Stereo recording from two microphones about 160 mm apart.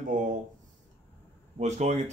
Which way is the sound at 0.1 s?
55° right (ahead or behind).